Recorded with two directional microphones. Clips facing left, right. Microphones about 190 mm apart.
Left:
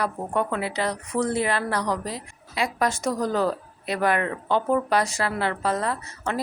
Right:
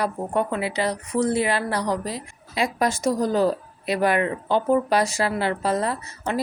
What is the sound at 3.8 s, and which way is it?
A woman's voice, 10° right (ahead or behind).